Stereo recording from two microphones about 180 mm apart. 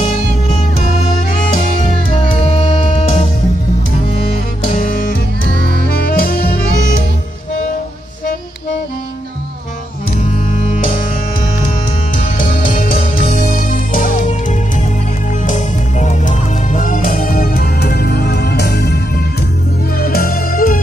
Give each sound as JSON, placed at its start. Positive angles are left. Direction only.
{"t": 1.0, "sound": "music", "side_deg": 45}
{"t": 2.5, "sound": "music", "side_deg": 35}
{"t": 4.6, "sound": "music", "side_deg": 50}
{"t": 5.9, "sound": "saxophone", "side_deg": 55}
{"t": 12.2, "sound": "music", "side_deg": 50}
{"t": 15.4, "sound": "music", "side_deg": 40}
{"t": 20.0, "sound": "music", "side_deg": 55}